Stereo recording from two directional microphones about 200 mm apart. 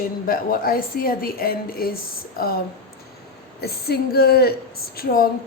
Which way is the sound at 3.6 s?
50° left (ahead or behind).